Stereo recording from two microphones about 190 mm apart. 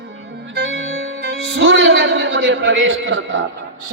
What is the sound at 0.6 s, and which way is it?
Music, 70° right (ahead or behind).